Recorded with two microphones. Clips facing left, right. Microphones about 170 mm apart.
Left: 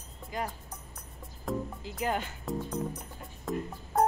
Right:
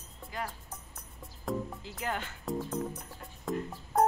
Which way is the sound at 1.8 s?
15° left (ahead or behind).